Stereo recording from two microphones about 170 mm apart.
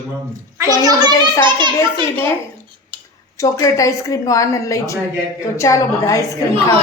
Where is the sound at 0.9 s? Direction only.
25° right (ahead or behind).